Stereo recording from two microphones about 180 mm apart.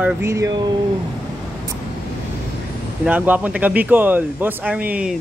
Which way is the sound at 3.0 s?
10° right (ahead or behind).